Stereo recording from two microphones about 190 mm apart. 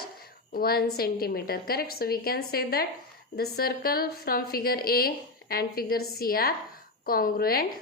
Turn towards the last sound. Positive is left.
turn(degrees=50)  # may be behind; listen again after turning